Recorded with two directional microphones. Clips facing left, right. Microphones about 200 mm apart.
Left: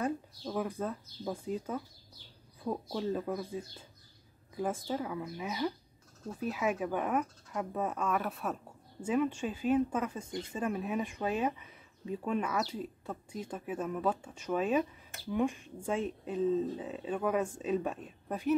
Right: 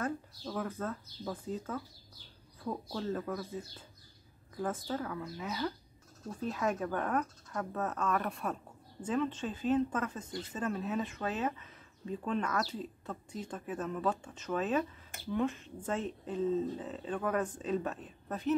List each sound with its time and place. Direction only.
0.0 s speech: 15° left (ahead or behind)